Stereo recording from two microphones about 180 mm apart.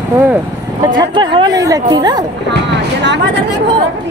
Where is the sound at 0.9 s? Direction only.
25° right (ahead or behind).